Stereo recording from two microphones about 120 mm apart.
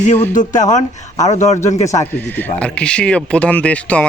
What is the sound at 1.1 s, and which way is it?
Speech, 30° left (ahead or behind).